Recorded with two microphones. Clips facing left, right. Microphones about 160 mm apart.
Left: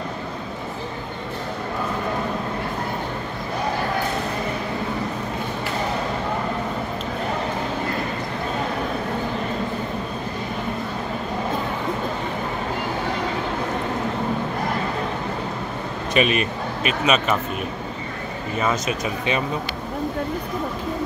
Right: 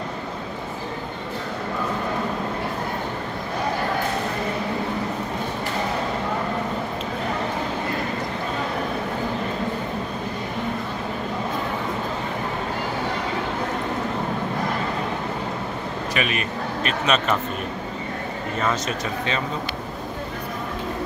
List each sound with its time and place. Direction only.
16.1 s speech: 20° left (ahead or behind)
16.8 s speech: 5° left (ahead or behind)
18.6 s speech: 10° left (ahead or behind)